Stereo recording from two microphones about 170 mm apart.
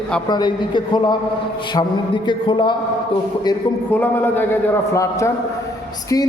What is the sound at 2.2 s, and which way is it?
Speech, 30° left (ahead or behind).